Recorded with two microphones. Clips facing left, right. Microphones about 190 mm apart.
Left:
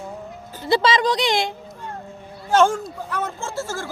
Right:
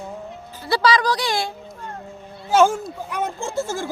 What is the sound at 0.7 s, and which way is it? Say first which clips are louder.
Speech: left 1 dB; 20° left (ahead or behind).